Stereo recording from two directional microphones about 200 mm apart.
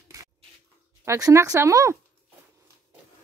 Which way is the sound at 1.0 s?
15° right (ahead or behind).